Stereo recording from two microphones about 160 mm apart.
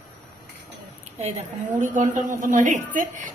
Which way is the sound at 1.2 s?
45° right (ahead or behind).